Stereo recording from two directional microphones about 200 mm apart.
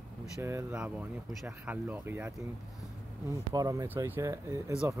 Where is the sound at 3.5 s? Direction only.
15° right (ahead or behind).